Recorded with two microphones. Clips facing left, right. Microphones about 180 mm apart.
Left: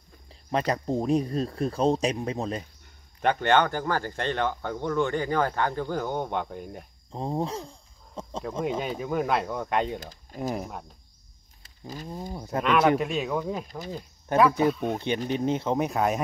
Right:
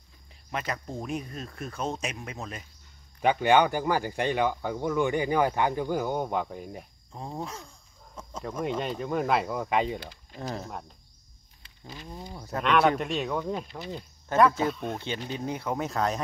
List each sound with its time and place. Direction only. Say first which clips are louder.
0.3 s speech: left 7 dB; 30° left (ahead or behind)
3.2 s speech: right 1 dB; 5° right (ahead or behind)
7.1 s speech: left 8 dB; 30° left (ahead or behind)
8.2 s cricket: left 5 dB; 30° left (ahead or behind)
8.6 s speech: even; 5° left (ahead or behind)
9.9 s speech: left 2 dB; 45° left (ahead or behind)
10.4 s speech: left 5 dB; 15° left (ahead or behind)
11.9 s speech: left 5 dB; 45° left (ahead or behind)
12.4 s speech: left 3 dB; 20° left (ahead or behind)
12.6 s speech: left 1 dB; centre (ahead or behind)
15.2 s speech: left 6 dB; 20° left (ahead or behind)